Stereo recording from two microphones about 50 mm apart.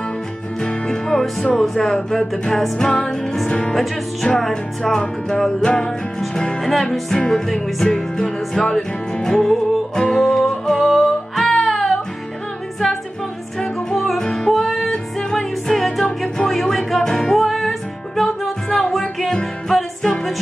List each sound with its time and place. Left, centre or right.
0.6 s music: centre
2.8 s music: centre
3.7 s music: centre
13.8 s music: centre